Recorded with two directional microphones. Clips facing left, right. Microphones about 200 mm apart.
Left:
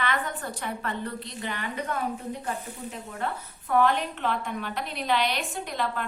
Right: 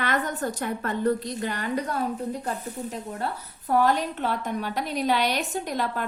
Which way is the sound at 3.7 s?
40° right (ahead or behind).